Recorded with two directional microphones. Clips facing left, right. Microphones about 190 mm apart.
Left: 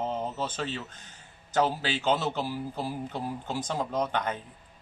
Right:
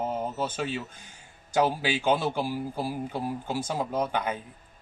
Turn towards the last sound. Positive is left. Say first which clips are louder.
# right 1 dB
turn(degrees=-10)  # may be behind; listen again after turning